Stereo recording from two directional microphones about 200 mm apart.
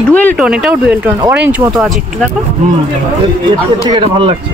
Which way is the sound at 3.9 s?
25° right (ahead or behind).